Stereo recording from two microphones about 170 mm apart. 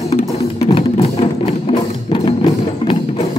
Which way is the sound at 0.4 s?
35° left (ahead or behind).